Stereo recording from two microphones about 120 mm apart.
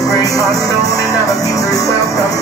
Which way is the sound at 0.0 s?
30° left (ahead or behind).